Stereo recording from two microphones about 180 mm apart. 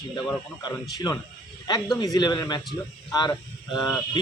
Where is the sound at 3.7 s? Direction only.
5° left (ahead or behind).